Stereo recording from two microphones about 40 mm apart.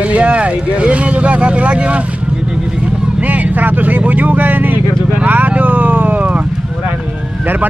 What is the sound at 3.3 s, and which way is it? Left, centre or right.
Speech, right.